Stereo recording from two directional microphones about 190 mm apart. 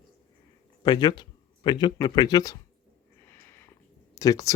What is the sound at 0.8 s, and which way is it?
Speech, 20° left (ahead or behind).